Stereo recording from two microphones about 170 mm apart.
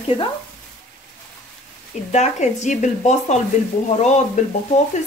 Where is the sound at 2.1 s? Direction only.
40° left (ahead or behind).